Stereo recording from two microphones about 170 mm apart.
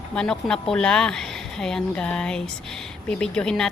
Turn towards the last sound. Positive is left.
turn(degrees=5)  # may be behind; listen again after turning